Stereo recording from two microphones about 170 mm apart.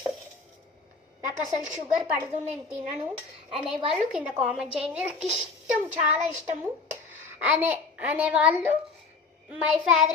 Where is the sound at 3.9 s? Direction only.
5° right (ahead or behind).